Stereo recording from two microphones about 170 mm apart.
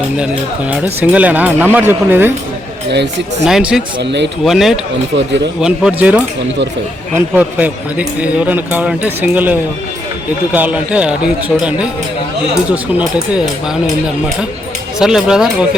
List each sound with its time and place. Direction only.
0.9 s a man's voice: 10° right (ahead or behind)
3.4 s speech: 5° right (ahead or behind)
4.0 s speech: 90° right
4.4 s speech: centre (ahead or behind)
7.3 s a man's voice: 10° right (ahead or behind)
14.9 s speech: 5° right (ahead or behind)